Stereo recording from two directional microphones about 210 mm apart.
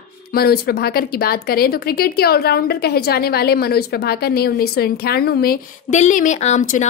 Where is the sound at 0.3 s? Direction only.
45° left (ahead or behind).